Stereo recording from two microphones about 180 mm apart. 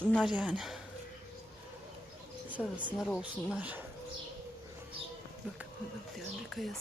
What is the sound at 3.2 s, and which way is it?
Speech, 5° right (ahead or behind).